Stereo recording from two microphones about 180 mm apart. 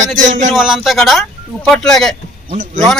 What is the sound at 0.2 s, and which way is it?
Speech, 45° right (ahead or behind).